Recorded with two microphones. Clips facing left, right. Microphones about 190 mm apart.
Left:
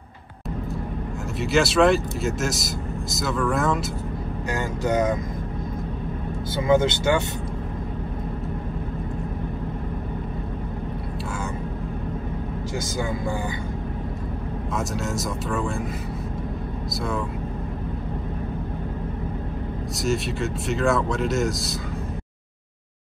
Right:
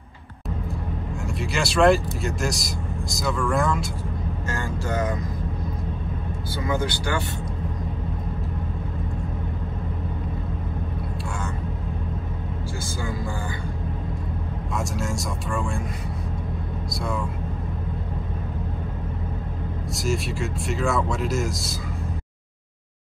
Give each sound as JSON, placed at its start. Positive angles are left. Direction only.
{"t": 1.4, "sound": "speech", "side_deg": 0}
{"t": 4.5, "sound": "speech", "side_deg": 20}
{"t": 6.5, "sound": "speech", "side_deg": 25}
{"t": 14.8, "sound": "speech", "side_deg": 0}
{"t": 20.0, "sound": "speech", "side_deg": 0}